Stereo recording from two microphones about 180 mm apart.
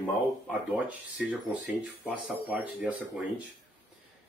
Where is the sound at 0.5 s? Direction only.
5° right (ahead or behind).